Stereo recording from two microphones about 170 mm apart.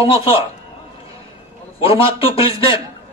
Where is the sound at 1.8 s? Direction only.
35° left (ahead or behind).